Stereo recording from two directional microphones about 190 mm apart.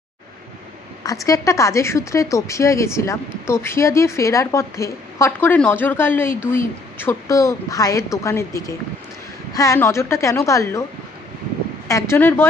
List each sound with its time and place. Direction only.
1.2 s a woman's voice: 15° left (ahead or behind)
11.9 s a woman's voice: 10° left (ahead or behind)